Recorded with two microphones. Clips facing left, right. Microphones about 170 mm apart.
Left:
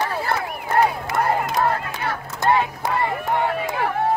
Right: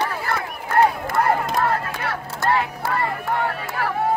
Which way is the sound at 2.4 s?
15° left (ahead or behind).